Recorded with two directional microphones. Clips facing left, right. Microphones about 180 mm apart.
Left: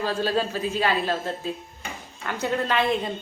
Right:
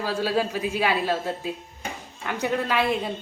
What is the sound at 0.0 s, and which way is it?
A woman's voice, 10° right (ahead or behind).